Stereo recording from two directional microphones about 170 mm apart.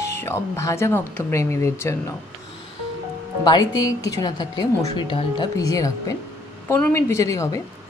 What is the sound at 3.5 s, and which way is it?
Speech, 25° left (ahead or behind).